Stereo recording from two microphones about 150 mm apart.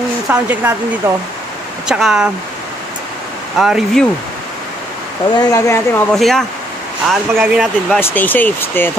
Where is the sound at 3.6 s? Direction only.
5° right (ahead or behind).